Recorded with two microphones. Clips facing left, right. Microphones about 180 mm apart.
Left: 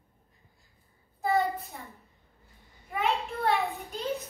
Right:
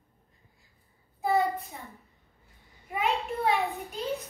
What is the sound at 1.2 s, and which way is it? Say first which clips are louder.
Child singing: right 1 dB; centre (ahead or behind).